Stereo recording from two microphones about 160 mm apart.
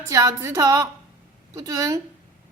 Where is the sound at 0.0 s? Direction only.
20° right (ahead or behind).